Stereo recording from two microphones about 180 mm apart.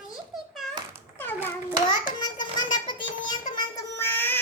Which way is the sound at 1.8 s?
25° left (ahead or behind).